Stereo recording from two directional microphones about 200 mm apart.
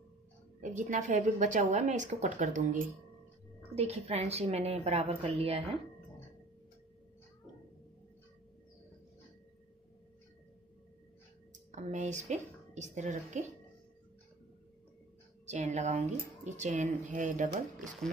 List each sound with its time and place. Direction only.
0.6 s a woman's voice: 40° right (ahead or behind)
11.7 s speech: 35° right (ahead or behind)
15.4 s a woman's voice: 35° right (ahead or behind)